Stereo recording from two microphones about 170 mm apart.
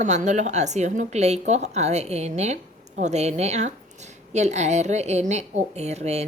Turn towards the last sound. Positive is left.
turn(degrees=-40)  # may be behind; listen again after turning